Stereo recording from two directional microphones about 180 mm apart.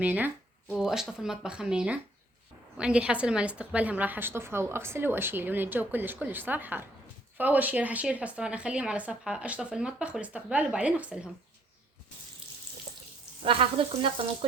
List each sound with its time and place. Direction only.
0.0 s a woman's voice: 10° right (ahead or behind)
13.4 s frying: 30° right (ahead or behind)